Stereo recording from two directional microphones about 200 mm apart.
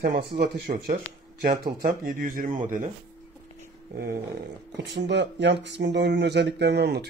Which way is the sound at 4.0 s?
50° right (ahead or behind).